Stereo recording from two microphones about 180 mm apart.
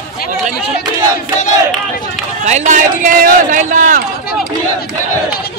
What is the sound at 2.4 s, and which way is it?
A man's voice, 40° right (ahead or behind).